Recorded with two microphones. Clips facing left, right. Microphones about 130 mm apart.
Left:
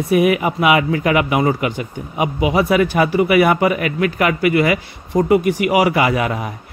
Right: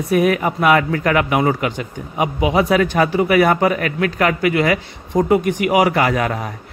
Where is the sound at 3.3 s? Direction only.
45° right (ahead or behind).